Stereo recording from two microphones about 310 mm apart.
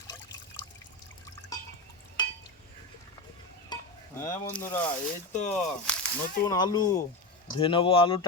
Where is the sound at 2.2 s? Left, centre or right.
Centre.